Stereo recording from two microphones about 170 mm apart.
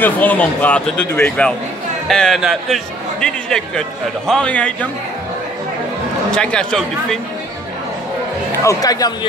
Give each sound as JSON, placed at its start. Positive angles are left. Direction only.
{"t": 0.0, "sound": "speech", "side_deg": 10}
{"t": 6.3, "sound": "speech", "side_deg": 5}
{"t": 8.6, "sound": "speech", "side_deg": 20}